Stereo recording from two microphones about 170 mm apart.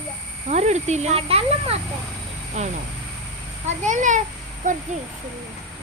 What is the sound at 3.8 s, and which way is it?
Speech, 45° right (ahead or behind).